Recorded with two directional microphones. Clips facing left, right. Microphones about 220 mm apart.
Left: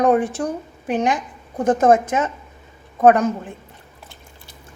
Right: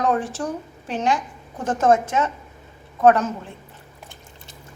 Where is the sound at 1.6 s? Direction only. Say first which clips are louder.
Left 4 dB; 15° left (ahead or behind).